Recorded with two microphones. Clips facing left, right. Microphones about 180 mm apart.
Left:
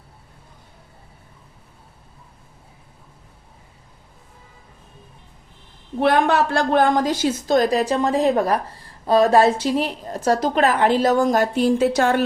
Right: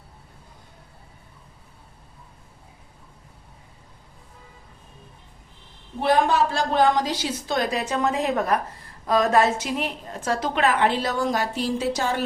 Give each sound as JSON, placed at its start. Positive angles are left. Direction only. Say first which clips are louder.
{"t": 6.0, "sound": "a woman's voice", "louder": "left 3 dB", "side_deg": 65}